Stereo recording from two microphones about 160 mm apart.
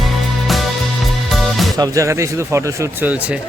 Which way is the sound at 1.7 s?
20° right (ahead or behind).